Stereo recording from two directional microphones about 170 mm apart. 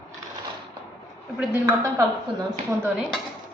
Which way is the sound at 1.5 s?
15° right (ahead or behind).